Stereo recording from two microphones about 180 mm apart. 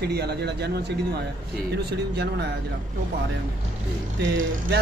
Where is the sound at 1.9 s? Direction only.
70° right (ahead or behind).